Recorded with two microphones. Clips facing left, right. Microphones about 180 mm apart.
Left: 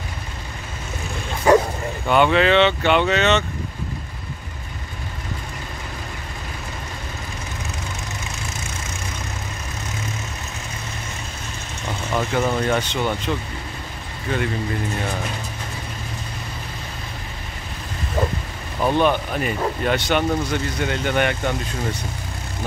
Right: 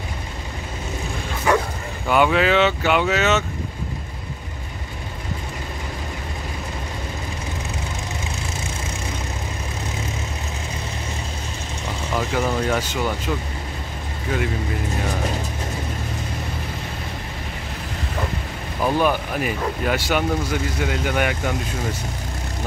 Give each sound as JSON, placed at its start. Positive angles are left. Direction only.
{"t": 1.5, "sound": "bow-wow", "side_deg": 35}
{"t": 2.0, "sound": "speech", "side_deg": -5}
{"t": 12.2, "sound": "speech", "side_deg": -5}
{"t": 18.8, "sound": "speech", "side_deg": -5}